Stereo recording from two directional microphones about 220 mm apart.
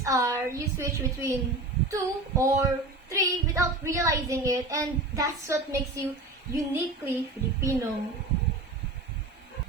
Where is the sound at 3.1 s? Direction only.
15° right (ahead or behind).